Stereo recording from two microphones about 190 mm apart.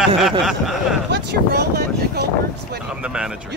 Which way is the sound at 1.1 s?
55° right (ahead or behind).